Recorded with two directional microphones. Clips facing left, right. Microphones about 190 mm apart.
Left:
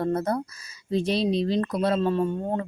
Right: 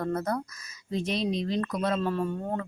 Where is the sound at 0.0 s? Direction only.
30° left (ahead or behind).